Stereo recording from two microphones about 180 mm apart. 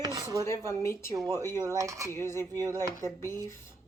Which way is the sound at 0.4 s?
15° left (ahead or behind).